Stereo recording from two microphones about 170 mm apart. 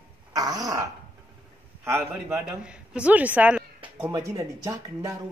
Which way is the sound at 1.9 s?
15° right (ahead or behind).